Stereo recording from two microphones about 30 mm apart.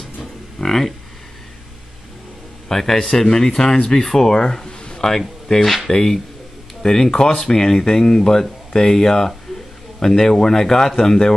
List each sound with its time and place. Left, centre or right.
0.6 s a man's voice: centre
2.7 s a man's voice: centre
4.9 s a sound: centre
5.9 s a man's voice: centre